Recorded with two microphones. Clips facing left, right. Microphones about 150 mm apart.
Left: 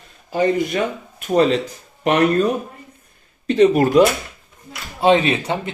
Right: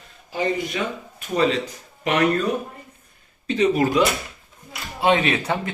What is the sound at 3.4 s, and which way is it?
Speech, 50° left (ahead or behind).